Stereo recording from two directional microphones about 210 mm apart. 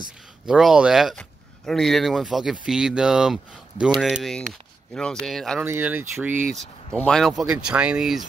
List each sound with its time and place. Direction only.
0.5 s speech: centre (ahead or behind)
6.9 s speech: 5° left (ahead or behind)